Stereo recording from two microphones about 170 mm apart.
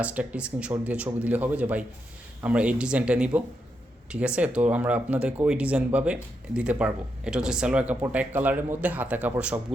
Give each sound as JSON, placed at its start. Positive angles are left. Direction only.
{"t": 0.0, "sound": "speech", "side_deg": -10}